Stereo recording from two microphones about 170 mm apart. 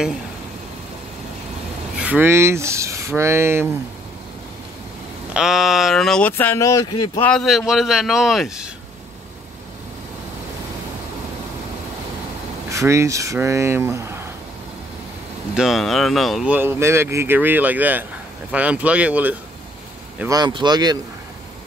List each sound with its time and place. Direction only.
2.0 s speech: 10° right (ahead or behind)
5.3 s speech: 5° right (ahead or behind); by 7.1 s 20° left (ahead or behind)
7.2 s speech: 5° left (ahead or behind)
12.6 s speech: 15° right (ahead or behind)
15.5 s speech: centre (ahead or behind)
16.5 s speech: 15° right (ahead or behind)
20.2 s speech: 25° right (ahead or behind)